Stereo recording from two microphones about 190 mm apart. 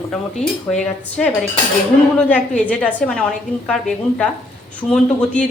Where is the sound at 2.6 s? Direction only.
5° left (ahead or behind).